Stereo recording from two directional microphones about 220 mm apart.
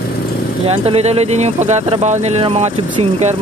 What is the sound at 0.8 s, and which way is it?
Speech, 30° right (ahead or behind).